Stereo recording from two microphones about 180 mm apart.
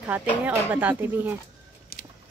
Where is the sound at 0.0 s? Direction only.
10° right (ahead or behind).